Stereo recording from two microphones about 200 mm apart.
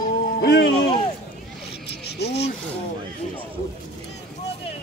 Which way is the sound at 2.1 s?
55° left (ahead or behind).